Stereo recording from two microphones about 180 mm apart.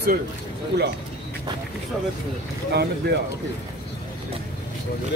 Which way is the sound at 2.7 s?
65° right (ahead or behind).